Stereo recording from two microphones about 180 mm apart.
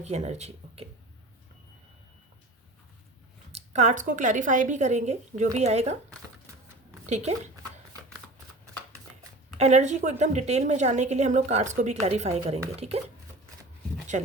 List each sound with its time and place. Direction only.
0.0 s a woman's voice: 40° right (ahead or behind)
3.5 s a woman's voice: 40° right (ahead or behind)
7.1 s a woman's voice: 40° right (ahead or behind)
9.6 s a woman's voice: 40° right (ahead or behind)